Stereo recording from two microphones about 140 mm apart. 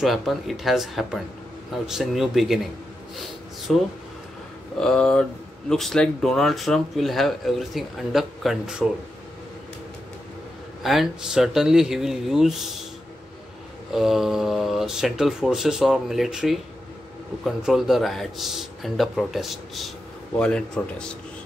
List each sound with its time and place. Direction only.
0.0 s speech: centre (ahead or behind)
10.8 s speech: centre (ahead or behind)
13.9 s a man's voice: 5° right (ahead or behind)